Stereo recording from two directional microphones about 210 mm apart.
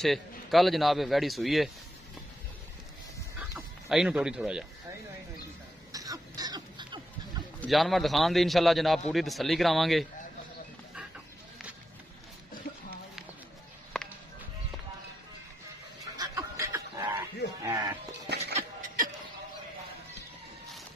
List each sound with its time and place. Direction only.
0.0 s a man's voice: centre (ahead or behind)
3.3 s chicken: 5° right (ahead or behind)
5.9 s cough: 15° right (ahead or behind)
7.6 s a man's voice: centre (ahead or behind)
13.9 s music: 5° left (ahead or behind)
16.2 s snicker: 15° right (ahead or behind)
17.6 s music: 20° right (ahead or behind)
18.5 s a sound: 40° right (ahead or behind)